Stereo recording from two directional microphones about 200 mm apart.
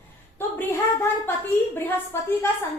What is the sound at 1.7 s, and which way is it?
Speech, 10° left (ahead or behind).